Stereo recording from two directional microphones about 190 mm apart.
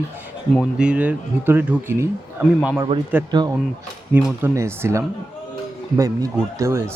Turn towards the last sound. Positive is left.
turn(degrees=-15)  # may be behind; listen again after turning